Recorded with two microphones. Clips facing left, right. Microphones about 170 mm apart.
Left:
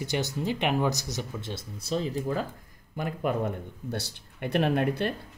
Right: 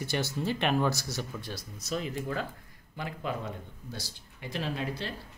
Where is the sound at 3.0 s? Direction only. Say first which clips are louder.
Left 7 dB; 50° left (ahead or behind).